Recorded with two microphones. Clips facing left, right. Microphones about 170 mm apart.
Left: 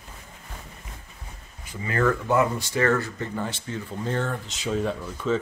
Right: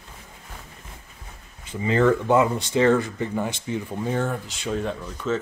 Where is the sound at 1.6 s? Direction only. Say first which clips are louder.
Right 4 dB; 25° right (ahead or behind); by 4.6 s 10° right (ahead or behind).